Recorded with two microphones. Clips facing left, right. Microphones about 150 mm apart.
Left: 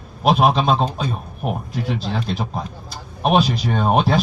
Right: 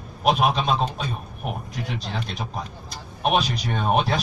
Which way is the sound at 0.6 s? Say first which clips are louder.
Left 5 dB; 45° left (ahead or behind).